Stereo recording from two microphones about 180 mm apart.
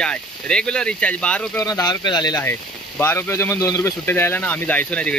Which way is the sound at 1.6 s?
20° left (ahead or behind).